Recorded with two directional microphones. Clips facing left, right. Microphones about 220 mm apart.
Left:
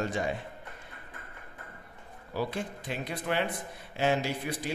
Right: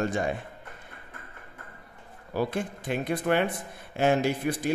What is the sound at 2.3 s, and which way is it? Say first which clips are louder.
A man's voice: right 4 dB; 50° right (ahead or behind).